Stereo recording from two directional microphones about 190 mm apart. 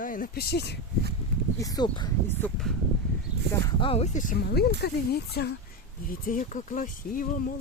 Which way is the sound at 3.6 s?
30° left (ahead or behind).